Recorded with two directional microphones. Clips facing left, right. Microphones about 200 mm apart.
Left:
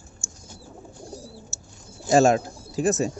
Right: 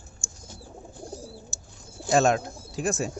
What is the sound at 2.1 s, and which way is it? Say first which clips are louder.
Speech: left 4 dB; 5° left (ahead or behind).